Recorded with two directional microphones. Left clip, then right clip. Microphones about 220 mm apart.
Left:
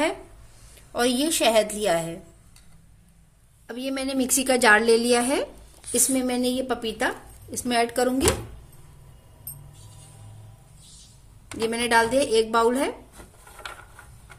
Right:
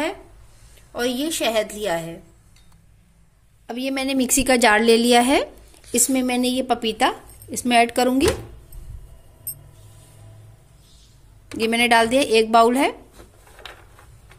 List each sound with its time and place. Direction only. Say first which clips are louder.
0.9 s a woman's voice: left 1 dB; centre (ahead or behind)
3.6 s a woman's voice: right 5 dB; 25° right (ahead or behind)
11.5 s a woman's voice: right 4 dB; 30° right (ahead or behind)